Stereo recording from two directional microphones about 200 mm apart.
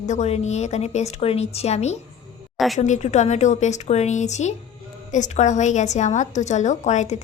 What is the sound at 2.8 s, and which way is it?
A woman's voice, 35° left (ahead or behind).